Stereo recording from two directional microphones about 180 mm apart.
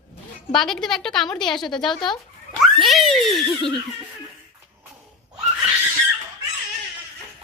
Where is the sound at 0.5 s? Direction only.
Centre (ahead or behind).